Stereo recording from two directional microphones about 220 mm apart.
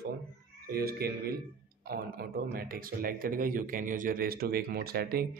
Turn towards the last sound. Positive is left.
turn(degrees=-45)  # may be behind; listen again after turning